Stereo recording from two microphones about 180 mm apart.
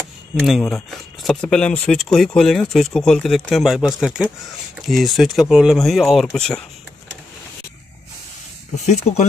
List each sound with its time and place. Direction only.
0.4 s speech: centre (ahead or behind)
8.7 s speech: 40° left (ahead or behind)